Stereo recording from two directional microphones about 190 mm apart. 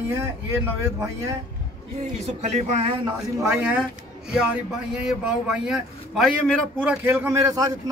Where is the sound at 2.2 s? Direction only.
35° right (ahead or behind).